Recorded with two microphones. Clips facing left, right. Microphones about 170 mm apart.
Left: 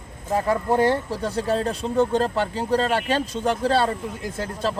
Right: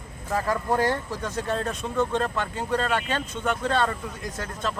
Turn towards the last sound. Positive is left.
turn(degrees=30)  # may be behind; listen again after turning